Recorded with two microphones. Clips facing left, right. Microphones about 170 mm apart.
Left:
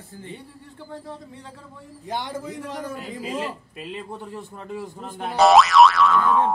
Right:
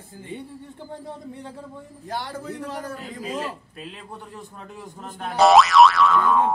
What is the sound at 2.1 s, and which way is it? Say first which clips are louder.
A man's voice: left 1 dB; 15° left (ahead or behind).